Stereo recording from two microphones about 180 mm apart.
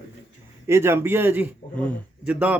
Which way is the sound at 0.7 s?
15° right (ahead or behind).